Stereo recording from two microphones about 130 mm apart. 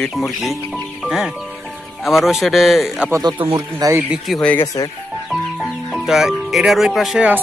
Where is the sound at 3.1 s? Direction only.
25° right (ahead or behind).